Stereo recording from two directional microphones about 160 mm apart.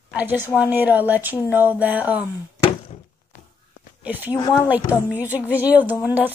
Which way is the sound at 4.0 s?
10° right (ahead or behind).